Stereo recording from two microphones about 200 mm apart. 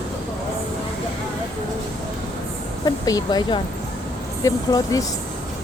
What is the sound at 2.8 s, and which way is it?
Speech, 20° left (ahead or behind).